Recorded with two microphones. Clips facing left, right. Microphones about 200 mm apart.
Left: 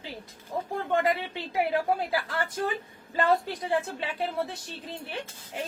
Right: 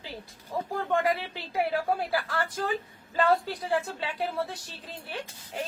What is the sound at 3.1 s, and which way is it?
A woman's voice, 20° left (ahead or behind).